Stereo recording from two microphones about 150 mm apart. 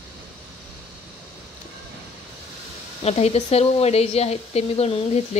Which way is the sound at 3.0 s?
45° left (ahead or behind).